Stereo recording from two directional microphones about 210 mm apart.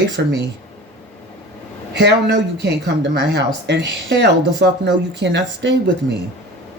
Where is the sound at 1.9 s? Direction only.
55° right (ahead or behind).